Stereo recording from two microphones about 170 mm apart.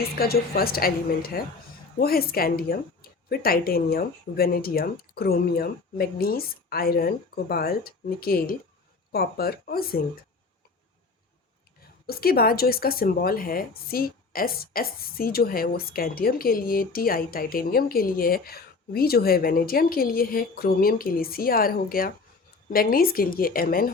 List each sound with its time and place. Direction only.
0.0 s speech: 65° left (ahead or behind)
12.0 s speech: 65° left (ahead or behind)